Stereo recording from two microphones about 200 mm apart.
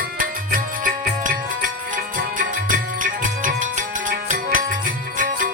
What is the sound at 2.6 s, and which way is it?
Music, 40° right (ahead or behind).